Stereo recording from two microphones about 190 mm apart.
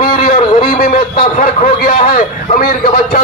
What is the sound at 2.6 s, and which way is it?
Speech, 50° left (ahead or behind).